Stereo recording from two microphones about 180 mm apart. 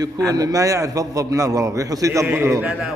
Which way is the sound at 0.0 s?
20° right (ahead or behind).